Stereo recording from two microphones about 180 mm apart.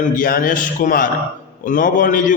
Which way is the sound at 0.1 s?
50° left (ahead or behind).